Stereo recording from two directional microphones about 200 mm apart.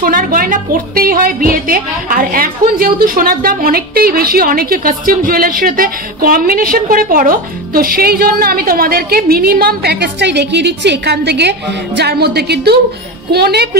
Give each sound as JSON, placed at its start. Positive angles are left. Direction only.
{"t": 0.0, "sound": "a woman's voice", "side_deg": -45}